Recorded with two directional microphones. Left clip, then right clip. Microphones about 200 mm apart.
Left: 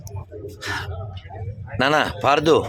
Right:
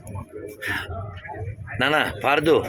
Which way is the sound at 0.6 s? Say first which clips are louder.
Right 1 dB; 10° left (ahead or behind).